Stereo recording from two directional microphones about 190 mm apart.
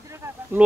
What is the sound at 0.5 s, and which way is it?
Speech, 10° right (ahead or behind).